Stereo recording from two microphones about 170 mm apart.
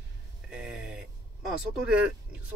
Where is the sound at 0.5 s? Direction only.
5° right (ahead or behind).